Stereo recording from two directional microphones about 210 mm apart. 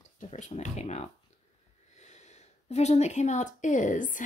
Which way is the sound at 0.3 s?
35° left (ahead or behind).